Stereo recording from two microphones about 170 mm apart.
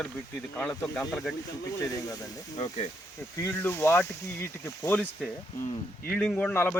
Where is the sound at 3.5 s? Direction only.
15° left (ahead or behind).